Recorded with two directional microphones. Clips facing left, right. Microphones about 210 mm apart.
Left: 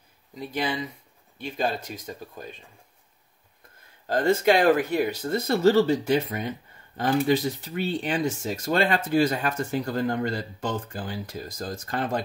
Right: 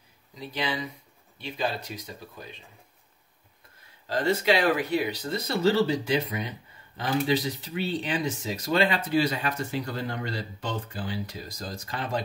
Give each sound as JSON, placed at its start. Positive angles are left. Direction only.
{"t": 0.4, "sound": "speech", "side_deg": 50}
{"t": 4.1, "sound": "speech", "side_deg": 50}